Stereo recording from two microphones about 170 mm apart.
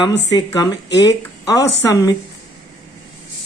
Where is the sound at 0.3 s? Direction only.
25° left (ahead or behind).